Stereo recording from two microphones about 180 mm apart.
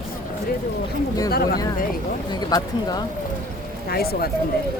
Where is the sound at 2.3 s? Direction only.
20° left (ahead or behind).